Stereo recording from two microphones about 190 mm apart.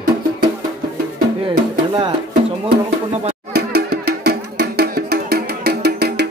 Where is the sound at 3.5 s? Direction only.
55° right (ahead or behind).